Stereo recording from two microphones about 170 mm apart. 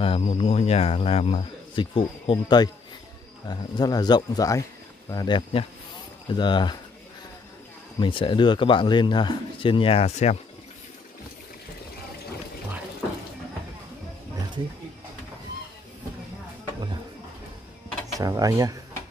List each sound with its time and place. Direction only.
0.0 s a man's voice: 35° left (ahead or behind)
8.0 s a man's voice: 30° left (ahead or behind)
18.1 s speech: 20° right (ahead or behind)